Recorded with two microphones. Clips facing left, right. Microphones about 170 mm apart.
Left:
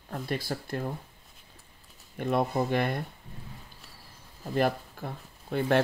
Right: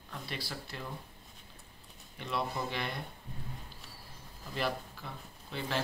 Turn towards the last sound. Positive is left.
turn(degrees=55)  # may be behind; listen again after turning